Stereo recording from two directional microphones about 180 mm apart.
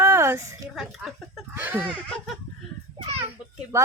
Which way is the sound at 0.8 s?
Centre (ahead or behind).